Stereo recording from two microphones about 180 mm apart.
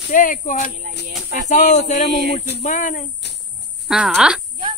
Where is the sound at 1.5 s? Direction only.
40° left (ahead or behind).